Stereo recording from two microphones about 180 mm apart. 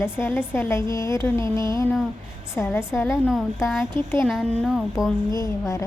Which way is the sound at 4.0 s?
25° right (ahead or behind).